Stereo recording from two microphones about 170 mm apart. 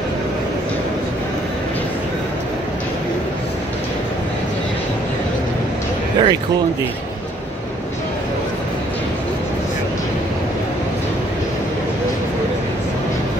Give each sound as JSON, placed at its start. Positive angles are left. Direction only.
{"t": 6.2, "sound": "speech", "side_deg": -25}